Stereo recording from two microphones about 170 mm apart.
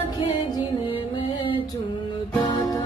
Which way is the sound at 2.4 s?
20° left (ahead or behind).